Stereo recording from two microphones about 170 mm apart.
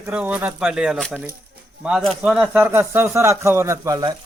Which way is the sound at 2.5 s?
10° right (ahead or behind).